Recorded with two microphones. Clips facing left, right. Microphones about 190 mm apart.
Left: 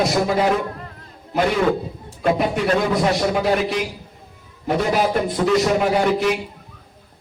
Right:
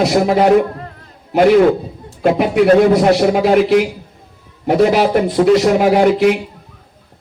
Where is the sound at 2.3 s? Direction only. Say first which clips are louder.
Right 13 dB; 65° right (ahead or behind).